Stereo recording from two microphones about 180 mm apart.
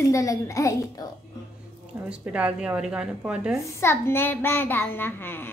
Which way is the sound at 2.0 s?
5° right (ahead or behind).